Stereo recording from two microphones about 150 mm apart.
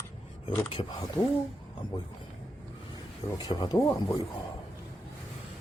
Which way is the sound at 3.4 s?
30° left (ahead or behind).